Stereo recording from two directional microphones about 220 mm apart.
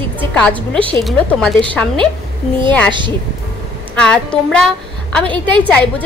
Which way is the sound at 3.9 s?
5° left (ahead or behind).